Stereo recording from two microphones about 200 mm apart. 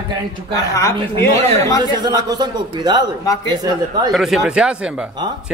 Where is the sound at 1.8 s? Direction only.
20° right (ahead or behind).